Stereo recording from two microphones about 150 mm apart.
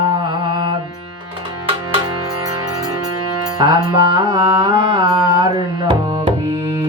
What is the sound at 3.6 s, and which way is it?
Music, 25° right (ahead or behind).